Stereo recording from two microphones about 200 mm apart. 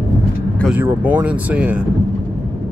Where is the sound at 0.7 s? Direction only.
10° right (ahead or behind).